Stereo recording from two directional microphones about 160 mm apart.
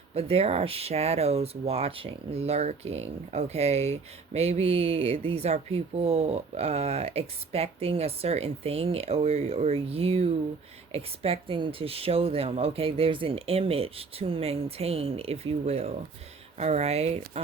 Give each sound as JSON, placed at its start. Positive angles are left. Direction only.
{"t": 0.1, "sound": "speech", "side_deg": -40}